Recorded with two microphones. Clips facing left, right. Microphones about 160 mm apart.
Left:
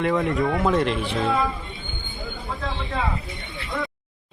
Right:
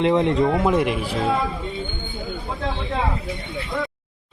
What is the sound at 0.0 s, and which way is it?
Speech, 20° right (ahead or behind).